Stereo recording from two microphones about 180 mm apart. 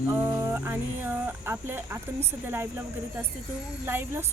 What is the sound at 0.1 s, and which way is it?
A woman's voice, 15° right (ahead or behind).